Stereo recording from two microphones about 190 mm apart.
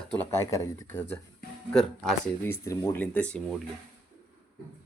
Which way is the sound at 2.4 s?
15° left (ahead or behind).